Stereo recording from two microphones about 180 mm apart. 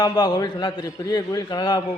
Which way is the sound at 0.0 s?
20° left (ahead or behind).